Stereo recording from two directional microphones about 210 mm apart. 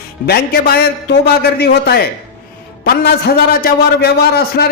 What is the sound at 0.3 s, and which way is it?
A man's voice, 50° left (ahead or behind).